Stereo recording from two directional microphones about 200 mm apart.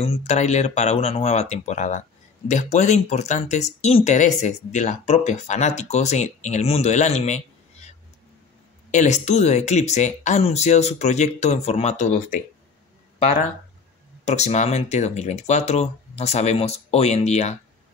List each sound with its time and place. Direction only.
0.0 s speech: 35° left (ahead or behind)
8.9 s speech: 35° left (ahead or behind)
14.2 s speech: 35° left (ahead or behind)